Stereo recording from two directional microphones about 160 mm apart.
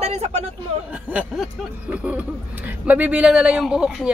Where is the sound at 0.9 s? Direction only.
10° right (ahead or behind).